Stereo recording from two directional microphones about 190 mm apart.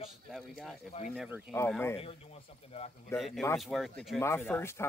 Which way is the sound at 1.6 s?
10° left (ahead or behind).